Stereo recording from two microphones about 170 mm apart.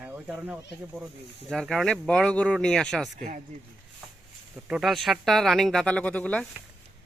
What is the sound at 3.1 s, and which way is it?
Speech, 45° right (ahead or behind).